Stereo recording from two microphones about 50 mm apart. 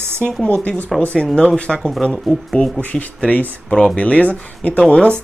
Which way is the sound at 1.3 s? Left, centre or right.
Left.